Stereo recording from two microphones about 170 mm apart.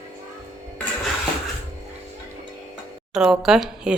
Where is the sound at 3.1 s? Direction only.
5° right (ahead or behind).